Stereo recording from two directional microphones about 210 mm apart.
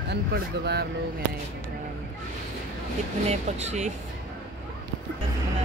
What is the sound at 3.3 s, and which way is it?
Speech, 30° right (ahead or behind).